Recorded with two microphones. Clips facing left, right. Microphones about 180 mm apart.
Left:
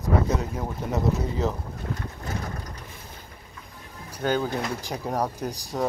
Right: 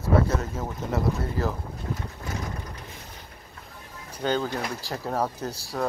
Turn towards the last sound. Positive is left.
turn(degrees=15)  # may be behind; listen again after turning